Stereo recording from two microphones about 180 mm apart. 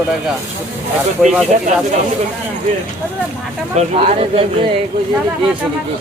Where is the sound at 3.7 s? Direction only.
35° right (ahead or behind).